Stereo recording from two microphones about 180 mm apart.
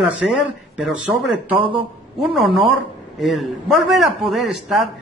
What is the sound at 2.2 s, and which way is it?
Speech, centre (ahead or behind).